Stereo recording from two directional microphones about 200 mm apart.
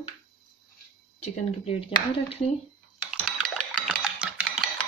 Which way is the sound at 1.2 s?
30° left (ahead or behind).